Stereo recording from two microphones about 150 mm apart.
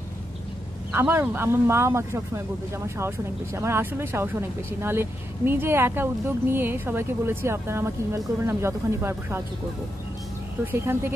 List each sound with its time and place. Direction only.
0.9 s speech: 15° right (ahead or behind)
10.6 s speech: 15° right (ahead or behind)